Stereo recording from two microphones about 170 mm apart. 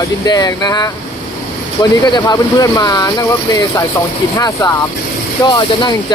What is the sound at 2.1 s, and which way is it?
Speech, 20° left (ahead or behind).